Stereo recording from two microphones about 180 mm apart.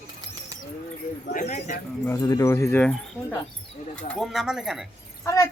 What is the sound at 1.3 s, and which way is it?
Speech, 40° left (ahead or behind).